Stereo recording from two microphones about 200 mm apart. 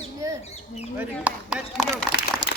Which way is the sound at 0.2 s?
15° right (ahead or behind).